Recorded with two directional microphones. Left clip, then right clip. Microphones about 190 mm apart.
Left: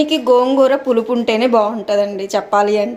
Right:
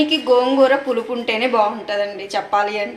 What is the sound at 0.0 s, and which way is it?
A woman's voice, 60° left (ahead or behind).